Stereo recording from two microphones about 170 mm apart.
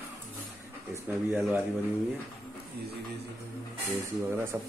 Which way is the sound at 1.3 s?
10° right (ahead or behind).